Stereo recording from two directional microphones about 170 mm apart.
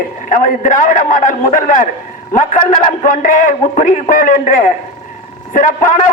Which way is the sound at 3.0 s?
50° left (ahead or behind).